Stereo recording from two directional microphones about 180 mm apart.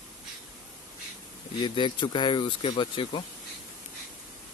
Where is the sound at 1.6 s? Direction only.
25° left (ahead or behind).